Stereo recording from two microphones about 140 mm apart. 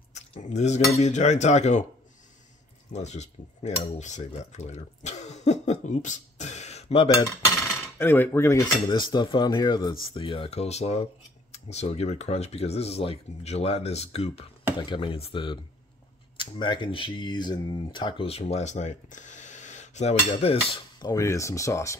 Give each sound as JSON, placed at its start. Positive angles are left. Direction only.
{"t": 0.1, "sound": "cutlery", "side_deg": 55}
{"t": 2.9, "sound": "speech", "side_deg": 55}
{"t": 7.2, "sound": "cutlery", "side_deg": 20}
{"t": 8.8, "sound": "cutlery", "side_deg": 35}
{"t": 10.1, "sound": "speech", "side_deg": 40}
{"t": 14.8, "sound": "cutlery", "side_deg": 35}
{"t": 16.3, "sound": "speech", "side_deg": 35}
{"t": 21.1, "sound": "speech", "side_deg": 20}